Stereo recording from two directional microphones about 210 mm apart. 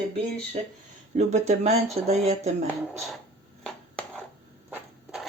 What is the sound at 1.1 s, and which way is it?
Speech, 35° right (ahead or behind).